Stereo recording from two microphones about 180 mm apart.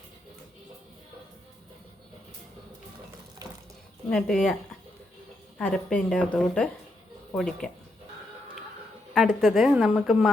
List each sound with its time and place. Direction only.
3.4 s water: 20° right (ahead or behind)
4.1 s speech: centre (ahead or behind)
5.5 s speech: 5° left (ahead or behind)
9.1 s speech: centre (ahead or behind)